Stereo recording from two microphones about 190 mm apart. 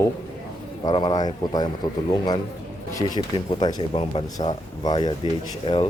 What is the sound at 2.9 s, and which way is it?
Speech, 20° left (ahead or behind).